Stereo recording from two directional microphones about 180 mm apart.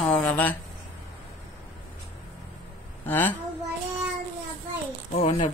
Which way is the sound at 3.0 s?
10° left (ahead or behind).